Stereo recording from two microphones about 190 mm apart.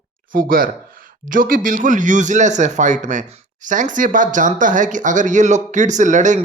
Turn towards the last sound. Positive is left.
turn(degrees=-40)  # may be behind; listen again after turning